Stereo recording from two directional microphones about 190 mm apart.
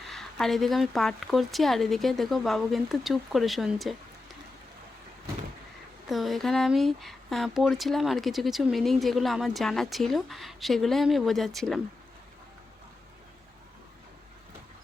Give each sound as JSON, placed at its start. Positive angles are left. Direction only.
{"t": 0.1, "sound": "speech", "side_deg": 0}
{"t": 6.1, "sound": "speech", "side_deg": 0}